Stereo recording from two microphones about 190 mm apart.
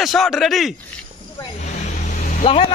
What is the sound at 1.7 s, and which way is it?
Vehicle, 40° left (ahead or behind).